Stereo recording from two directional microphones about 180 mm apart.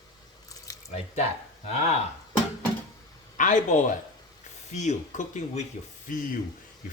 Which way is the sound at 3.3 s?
45° left (ahead or behind).